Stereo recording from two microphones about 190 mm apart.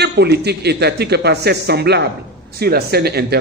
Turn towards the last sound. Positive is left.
turn(degrees=-55)  # may be behind; listen again after turning